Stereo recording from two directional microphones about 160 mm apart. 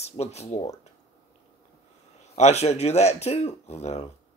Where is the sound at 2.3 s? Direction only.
45° left (ahead or behind).